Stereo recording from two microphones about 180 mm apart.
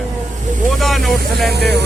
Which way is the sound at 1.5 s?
65° right (ahead or behind).